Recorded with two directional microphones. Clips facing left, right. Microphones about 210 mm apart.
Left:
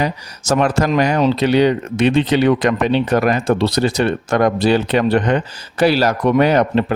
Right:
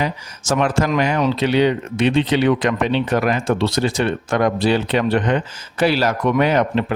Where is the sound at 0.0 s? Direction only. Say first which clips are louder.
Left 3 dB; 40° left (ahead or behind).